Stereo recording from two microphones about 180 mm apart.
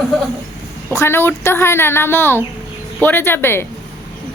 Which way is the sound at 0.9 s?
15° left (ahead or behind).